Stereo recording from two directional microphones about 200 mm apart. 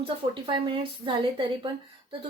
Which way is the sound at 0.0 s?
25° right (ahead or behind).